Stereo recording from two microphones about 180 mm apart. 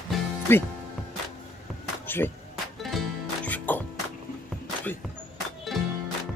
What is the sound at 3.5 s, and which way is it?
Music, 10° left (ahead or behind).